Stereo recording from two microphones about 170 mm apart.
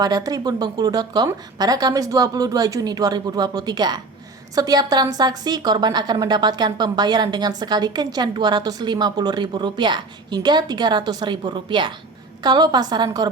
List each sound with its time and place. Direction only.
0.0 s a woman's voice: 20° right (ahead or behind)